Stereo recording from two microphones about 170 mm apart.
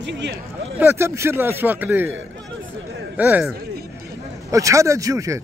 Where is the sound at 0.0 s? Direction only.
90° right.